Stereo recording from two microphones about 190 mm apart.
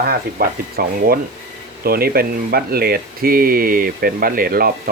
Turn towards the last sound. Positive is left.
turn(degrees=-50)  # may be behind; listen again after turning